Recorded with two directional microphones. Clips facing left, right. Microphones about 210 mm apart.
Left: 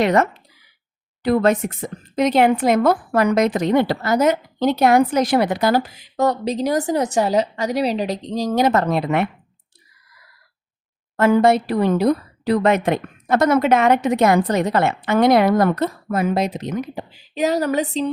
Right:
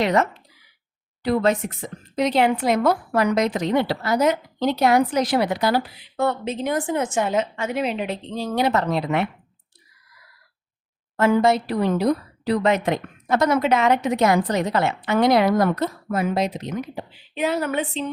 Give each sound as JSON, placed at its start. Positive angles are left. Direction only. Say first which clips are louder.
{"t": 0.0, "sound": "speech", "louder": "left 3 dB", "side_deg": 50}
{"t": 11.2, "sound": "speech", "louder": "left 3 dB", "side_deg": 55}
{"t": 16.9, "sound": "speech", "louder": "left 2 dB", "side_deg": 45}